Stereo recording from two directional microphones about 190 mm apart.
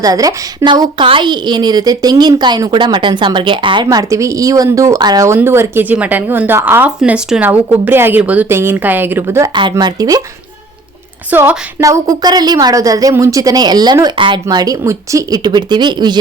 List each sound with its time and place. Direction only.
0.0 s a woman's voice: 20° right (ahead or behind)
11.3 s a woman's voice: 10° right (ahead or behind)